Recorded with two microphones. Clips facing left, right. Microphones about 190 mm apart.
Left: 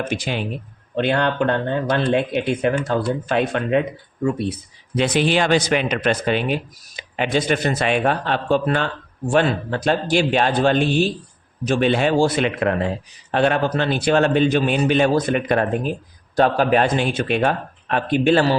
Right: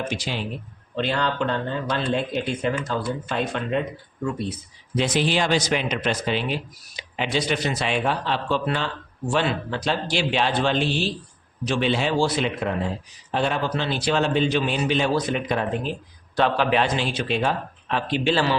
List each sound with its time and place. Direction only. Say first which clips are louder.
0.1 s a man's voice: left 4 dB; 55° left (ahead or behind)